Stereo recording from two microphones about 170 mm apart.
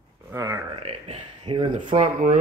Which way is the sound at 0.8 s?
35° right (ahead or behind).